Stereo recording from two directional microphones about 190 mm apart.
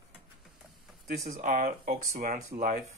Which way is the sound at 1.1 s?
45° right (ahead or behind).